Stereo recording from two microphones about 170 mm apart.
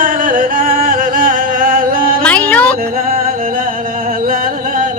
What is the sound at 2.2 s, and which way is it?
Music, 10° left (ahead or behind).